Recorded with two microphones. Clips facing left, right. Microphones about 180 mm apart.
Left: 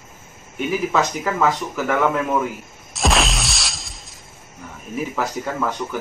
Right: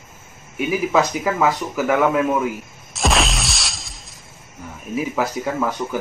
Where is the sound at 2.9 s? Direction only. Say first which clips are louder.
Even; centre (ahead or behind).